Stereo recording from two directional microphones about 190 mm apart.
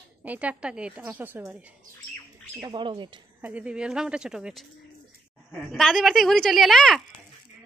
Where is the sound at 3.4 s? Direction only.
5° right (ahead or behind).